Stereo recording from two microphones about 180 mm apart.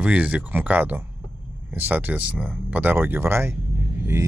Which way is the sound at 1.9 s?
10° right (ahead or behind).